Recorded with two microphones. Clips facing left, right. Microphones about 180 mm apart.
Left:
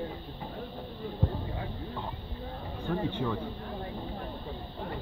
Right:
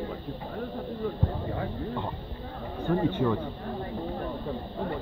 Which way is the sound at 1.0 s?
60° right (ahead or behind).